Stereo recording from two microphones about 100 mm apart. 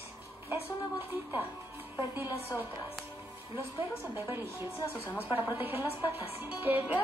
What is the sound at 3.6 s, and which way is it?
A woman's voice, 25° right (ahead or behind).